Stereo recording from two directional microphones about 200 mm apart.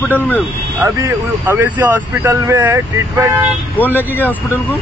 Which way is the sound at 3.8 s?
10° left (ahead or behind).